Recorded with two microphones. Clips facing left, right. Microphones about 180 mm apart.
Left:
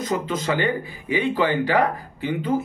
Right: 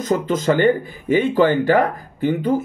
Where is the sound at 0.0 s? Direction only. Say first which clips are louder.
Right 5 dB; 45° right (ahead or behind).